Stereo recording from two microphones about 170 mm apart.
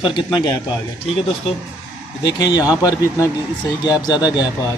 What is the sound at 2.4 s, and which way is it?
A man's voice, 25° left (ahead or behind).